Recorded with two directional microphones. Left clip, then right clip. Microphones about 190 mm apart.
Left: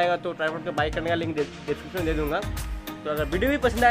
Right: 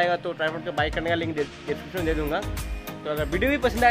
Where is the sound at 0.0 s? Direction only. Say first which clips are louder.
Even; centre (ahead or behind).